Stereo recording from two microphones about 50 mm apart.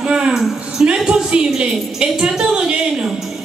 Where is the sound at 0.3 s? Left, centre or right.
Centre.